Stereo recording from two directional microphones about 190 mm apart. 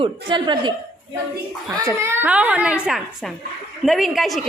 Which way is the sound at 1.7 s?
15° right (ahead or behind).